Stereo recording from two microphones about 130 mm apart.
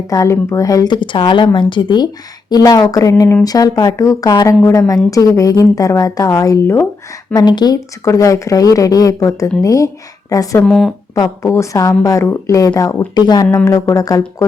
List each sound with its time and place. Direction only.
0.1 s speech: 25° left (ahead or behind)
1.0 s a woman's voice: 40° left (ahead or behind); by 6.8 s 20° left (ahead or behind)
7.3 s speech: 30° left (ahead or behind)
10.6 s speech: 5° left (ahead or behind)
11.4 s a woman's voice: 20° left (ahead or behind)